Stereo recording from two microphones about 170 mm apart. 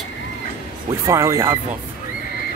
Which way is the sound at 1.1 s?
15° right (ahead or behind).